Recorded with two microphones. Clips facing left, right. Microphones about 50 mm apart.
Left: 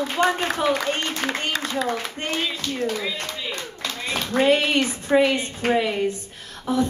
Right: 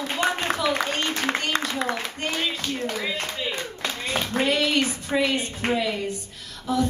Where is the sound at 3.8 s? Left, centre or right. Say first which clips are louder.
Even; centre.